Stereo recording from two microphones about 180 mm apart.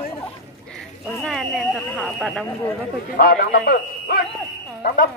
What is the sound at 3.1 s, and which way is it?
A man's voice, 55° left (ahead or behind).